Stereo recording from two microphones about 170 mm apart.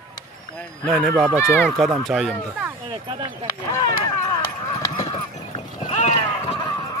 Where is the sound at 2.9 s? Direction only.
30° right (ahead or behind).